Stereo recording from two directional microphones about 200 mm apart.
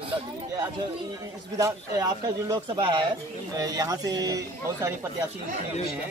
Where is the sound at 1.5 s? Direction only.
15° right (ahead or behind).